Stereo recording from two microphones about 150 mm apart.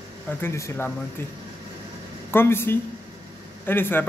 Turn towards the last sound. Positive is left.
turn(degrees=15)  # may be behind; listen again after turning